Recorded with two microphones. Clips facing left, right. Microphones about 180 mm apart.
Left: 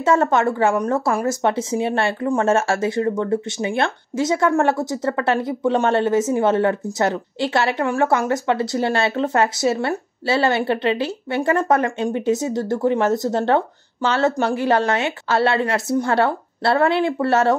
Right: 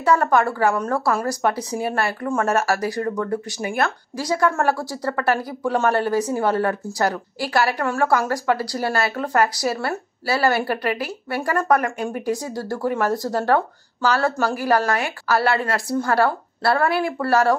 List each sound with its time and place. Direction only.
0.0 s speech: 25° left (ahead or behind)